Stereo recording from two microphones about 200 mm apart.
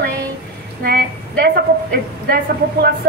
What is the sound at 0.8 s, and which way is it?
A woman's voice, 50° right (ahead or behind).